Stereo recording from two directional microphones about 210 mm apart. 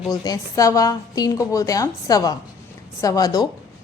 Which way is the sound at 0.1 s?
15° left (ahead or behind).